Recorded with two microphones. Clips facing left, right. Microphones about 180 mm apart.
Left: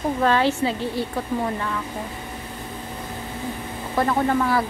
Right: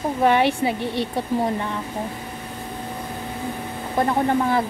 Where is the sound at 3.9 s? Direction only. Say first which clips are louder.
Right 1 dB; 25° right (ahead or behind).